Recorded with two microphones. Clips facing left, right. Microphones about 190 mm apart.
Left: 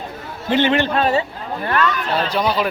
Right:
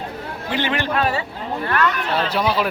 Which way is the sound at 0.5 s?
25° left (ahead or behind).